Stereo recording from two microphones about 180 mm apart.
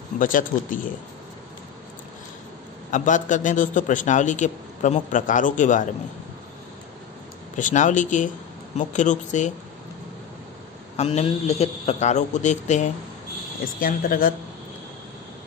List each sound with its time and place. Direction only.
0.2 s a man's voice: 50° left (ahead or behind)
2.9 s a man's voice: 45° left (ahead or behind)
7.5 s a man's voice: 45° left (ahead or behind)
11.0 s a man's voice: 35° left (ahead or behind)
13.7 s a man's voice: 50° left (ahead or behind)